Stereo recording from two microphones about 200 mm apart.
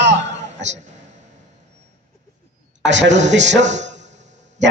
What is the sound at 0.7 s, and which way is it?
Speech, 35° right (ahead or behind).